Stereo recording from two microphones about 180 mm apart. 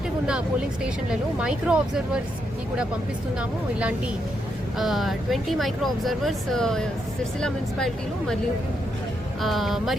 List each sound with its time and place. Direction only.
1.1 s speech: 5° right (ahead or behind)
3.8 s speech: 5° right (ahead or behind)
9.4 s speech: centre (ahead or behind)